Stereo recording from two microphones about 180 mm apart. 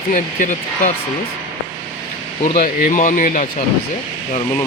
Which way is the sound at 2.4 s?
50° left (ahead or behind).